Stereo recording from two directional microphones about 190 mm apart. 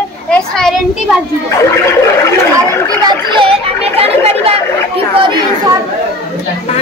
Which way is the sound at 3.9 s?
35° right (ahead or behind).